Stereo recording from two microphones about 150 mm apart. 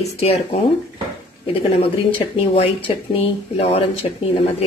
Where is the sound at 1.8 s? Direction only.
40° left (ahead or behind).